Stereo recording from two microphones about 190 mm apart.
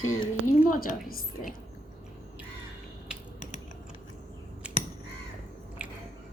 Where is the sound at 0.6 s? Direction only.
45° left (ahead or behind).